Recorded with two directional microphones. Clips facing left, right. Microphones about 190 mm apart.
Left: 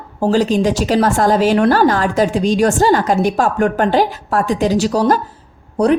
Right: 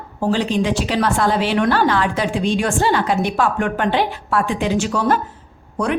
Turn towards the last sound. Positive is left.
turn(degrees=35)  # may be behind; listen again after turning